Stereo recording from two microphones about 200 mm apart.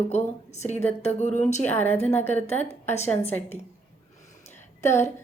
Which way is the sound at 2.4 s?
35° left (ahead or behind).